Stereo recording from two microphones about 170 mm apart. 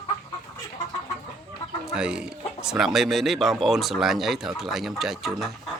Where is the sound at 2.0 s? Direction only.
5° right (ahead or behind).